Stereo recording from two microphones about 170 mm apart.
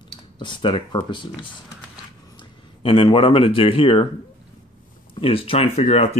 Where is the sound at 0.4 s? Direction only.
30° left (ahead or behind).